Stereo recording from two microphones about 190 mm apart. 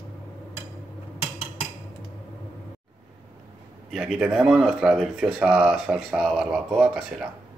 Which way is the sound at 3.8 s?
Centre (ahead or behind).